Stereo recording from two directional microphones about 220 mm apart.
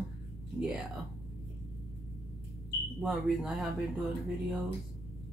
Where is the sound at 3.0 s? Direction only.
Centre (ahead or behind).